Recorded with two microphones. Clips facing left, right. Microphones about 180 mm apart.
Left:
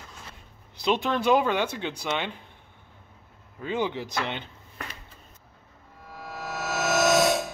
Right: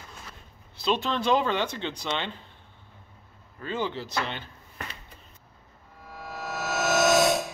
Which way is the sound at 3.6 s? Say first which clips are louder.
Left 2 dB; 15° left (ahead or behind).